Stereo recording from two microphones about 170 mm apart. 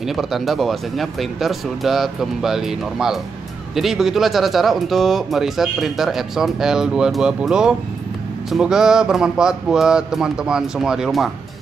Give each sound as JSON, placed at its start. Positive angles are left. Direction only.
{"t": 0.0, "sound": "speech", "side_deg": 0}